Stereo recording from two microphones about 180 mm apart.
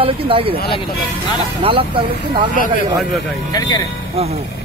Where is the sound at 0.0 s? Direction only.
30° right (ahead or behind).